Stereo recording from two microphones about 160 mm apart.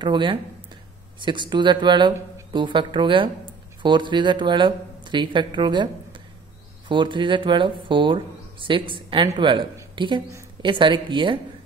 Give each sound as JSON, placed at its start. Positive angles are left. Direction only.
{"t": 0.0, "sound": "speech", "side_deg": -30}
{"t": 6.9, "sound": "a woman's voice", "side_deg": -30}